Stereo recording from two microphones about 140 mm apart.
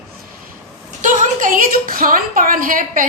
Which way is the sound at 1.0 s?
75° right (ahead or behind).